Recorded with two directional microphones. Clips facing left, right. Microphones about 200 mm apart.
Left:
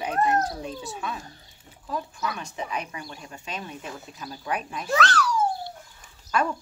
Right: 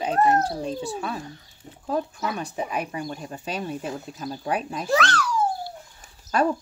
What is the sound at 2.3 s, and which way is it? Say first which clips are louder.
A child's voice: right 4 dB; 35° right (ahead or behind).